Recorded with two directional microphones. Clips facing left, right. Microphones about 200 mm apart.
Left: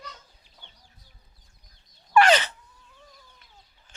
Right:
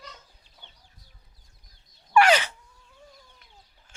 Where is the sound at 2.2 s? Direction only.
10° right (ahead or behind).